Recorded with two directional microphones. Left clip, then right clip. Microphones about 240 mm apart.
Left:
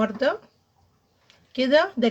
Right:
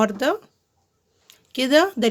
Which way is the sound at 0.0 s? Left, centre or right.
Right.